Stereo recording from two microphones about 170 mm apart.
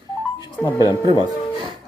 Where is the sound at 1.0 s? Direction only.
30° right (ahead or behind).